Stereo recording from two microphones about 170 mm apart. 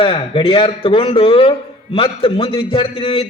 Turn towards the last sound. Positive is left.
turn(degrees=30)  # may be behind; listen again after turning